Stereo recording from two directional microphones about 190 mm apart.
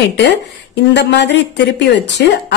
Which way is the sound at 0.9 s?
65° left (ahead or behind).